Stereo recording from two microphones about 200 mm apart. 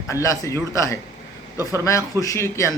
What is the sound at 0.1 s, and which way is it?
A man's voice, 15° left (ahead or behind).